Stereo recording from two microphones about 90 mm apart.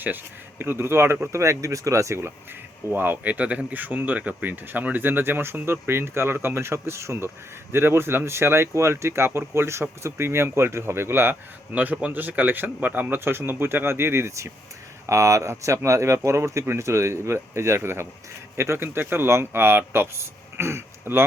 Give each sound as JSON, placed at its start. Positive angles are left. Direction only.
{"t": 0.6, "sound": "speech", "side_deg": -25}